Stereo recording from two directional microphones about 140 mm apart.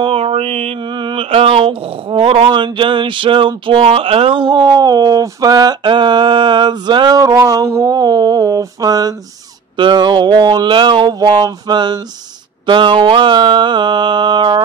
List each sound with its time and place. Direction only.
0.0 s mantra: 45° right (ahead or behind)